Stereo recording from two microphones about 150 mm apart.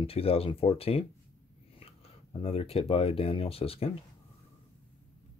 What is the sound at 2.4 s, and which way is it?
Speech, 40° left (ahead or behind).